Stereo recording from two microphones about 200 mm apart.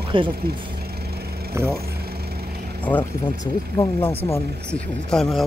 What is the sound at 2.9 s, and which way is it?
Speech, 5° left (ahead or behind).